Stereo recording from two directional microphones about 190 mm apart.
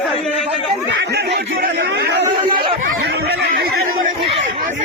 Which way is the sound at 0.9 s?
60° right (ahead or behind).